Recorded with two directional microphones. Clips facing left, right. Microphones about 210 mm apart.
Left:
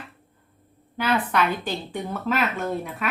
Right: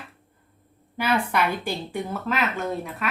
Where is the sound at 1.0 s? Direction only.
10° right (ahead or behind).